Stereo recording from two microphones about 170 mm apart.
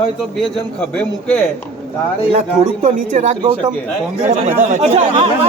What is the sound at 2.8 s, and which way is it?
Speech, 45° right (ahead or behind).